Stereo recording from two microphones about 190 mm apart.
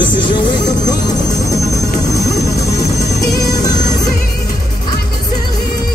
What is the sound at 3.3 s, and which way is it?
Music, 20° left (ahead or behind).